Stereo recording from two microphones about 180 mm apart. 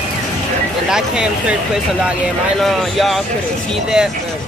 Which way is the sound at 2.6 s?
Centre (ahead or behind).